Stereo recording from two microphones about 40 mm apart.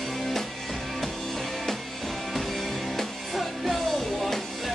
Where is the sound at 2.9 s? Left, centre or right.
Centre.